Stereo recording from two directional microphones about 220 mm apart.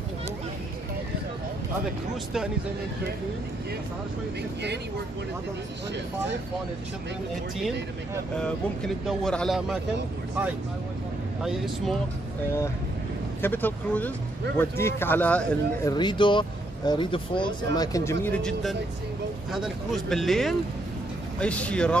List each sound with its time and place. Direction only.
8.4 s speech: centre (ahead or behind)
11.4 s speech: centre (ahead or behind)
13.4 s speech: 10° left (ahead or behind)
15.9 s speech: 20° left (ahead or behind); by 21.9 s 5° left (ahead or behind)